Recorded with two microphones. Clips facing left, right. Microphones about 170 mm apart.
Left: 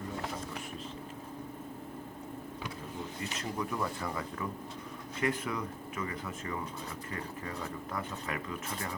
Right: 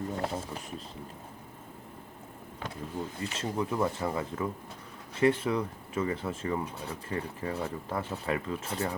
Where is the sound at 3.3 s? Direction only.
25° right (ahead or behind).